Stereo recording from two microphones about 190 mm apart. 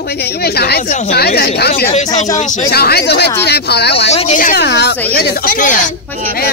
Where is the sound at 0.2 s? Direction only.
55° left (ahead or behind).